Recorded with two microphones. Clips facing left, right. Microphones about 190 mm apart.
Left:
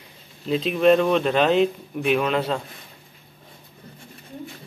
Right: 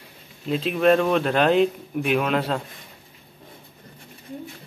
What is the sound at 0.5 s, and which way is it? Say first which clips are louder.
Speech: left 1 dB; 5° right (ahead or behind).